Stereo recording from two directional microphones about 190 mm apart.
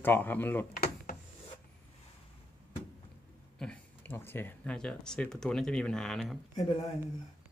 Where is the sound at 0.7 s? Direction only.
45° left (ahead or behind).